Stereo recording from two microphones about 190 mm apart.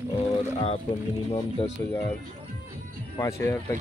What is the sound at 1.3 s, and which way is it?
Speech, 20° left (ahead or behind).